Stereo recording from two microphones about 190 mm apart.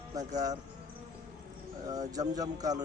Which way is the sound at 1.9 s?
20° right (ahead or behind).